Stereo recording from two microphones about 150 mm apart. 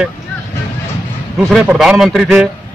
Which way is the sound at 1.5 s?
5° right (ahead or behind).